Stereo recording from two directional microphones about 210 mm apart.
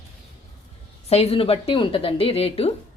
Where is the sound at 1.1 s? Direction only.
30° left (ahead or behind).